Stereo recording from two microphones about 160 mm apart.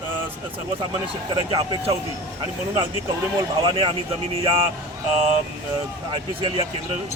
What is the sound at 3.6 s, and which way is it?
Speech, 35° right (ahead or behind).